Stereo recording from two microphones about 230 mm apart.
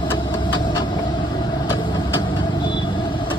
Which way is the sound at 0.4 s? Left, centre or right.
Left.